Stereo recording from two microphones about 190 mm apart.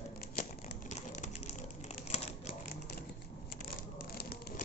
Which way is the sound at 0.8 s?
40° left (ahead or behind).